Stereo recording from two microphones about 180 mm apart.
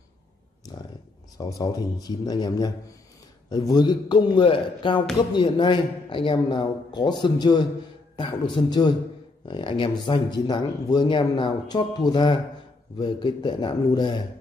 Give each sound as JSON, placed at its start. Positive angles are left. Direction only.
{"t": 1.6, "sound": "speech", "side_deg": 20}